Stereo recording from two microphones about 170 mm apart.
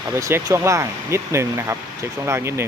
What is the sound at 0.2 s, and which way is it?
Speech, 20° right (ahead or behind).